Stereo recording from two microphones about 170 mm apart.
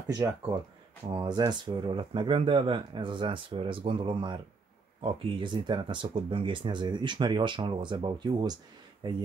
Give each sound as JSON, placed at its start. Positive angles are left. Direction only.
{"t": 1.1, "sound": "speech", "side_deg": -25}